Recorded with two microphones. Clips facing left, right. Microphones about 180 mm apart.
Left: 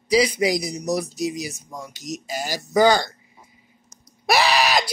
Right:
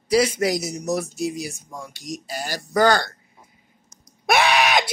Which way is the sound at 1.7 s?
15° left (ahead or behind).